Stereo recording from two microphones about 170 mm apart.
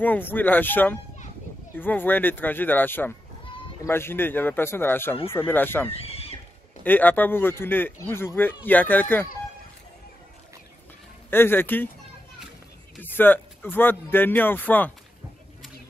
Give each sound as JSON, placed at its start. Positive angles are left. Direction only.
{"t": 0.0, "sound": "speech", "side_deg": 10}
{"t": 5.9, "sound": "neigh", "side_deg": 35}
{"t": 6.8, "sound": "speech", "side_deg": 10}
{"t": 11.2, "sound": "speech", "side_deg": 10}
{"t": 13.0, "sound": "speech", "side_deg": 10}